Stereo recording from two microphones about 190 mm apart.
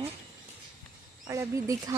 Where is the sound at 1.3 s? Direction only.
15° right (ahead or behind).